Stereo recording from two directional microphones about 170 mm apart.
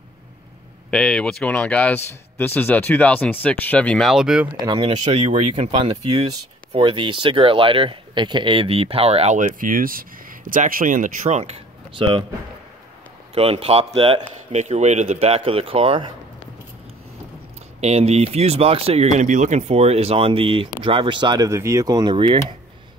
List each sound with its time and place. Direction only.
0.8 s speech: 5° left (ahead or behind)
4.6 s speech: 30° right (ahead or behind); by 11.4 s 45° right (ahead or behind)
12.0 s speech: 30° right (ahead or behind)
13.3 s speech: 35° right (ahead or behind)
17.7 s speech: 40° right (ahead or behind)
19.1 s speech: 45° right (ahead or behind); by 22.1 s 20° right (ahead or behind)
22.1 s speech: 30° right (ahead or behind)